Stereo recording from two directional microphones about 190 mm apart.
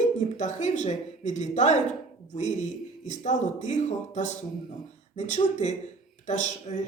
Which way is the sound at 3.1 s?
40° left (ahead or behind).